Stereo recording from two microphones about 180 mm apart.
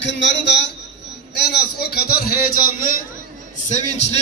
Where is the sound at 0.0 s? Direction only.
75° left (ahead or behind).